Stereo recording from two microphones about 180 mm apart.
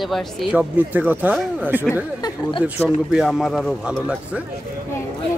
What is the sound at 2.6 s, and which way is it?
Speech, centre (ahead or behind).